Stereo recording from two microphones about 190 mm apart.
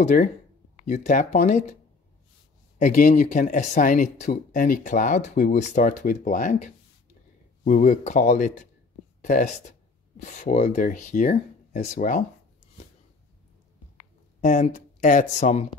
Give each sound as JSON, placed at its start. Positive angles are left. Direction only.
{"t": 0.0, "sound": "speech", "side_deg": 40}
{"t": 2.8, "sound": "speech", "side_deg": 40}
{"t": 14.4, "sound": "speech", "side_deg": 40}